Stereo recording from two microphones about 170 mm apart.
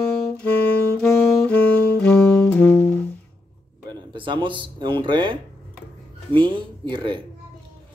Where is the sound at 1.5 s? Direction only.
5° left (ahead or behind).